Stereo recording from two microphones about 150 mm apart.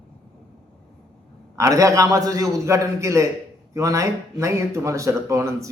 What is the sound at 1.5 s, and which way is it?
Speech, 20° right (ahead or behind).